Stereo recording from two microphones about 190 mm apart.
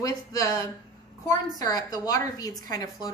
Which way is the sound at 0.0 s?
15° left (ahead or behind).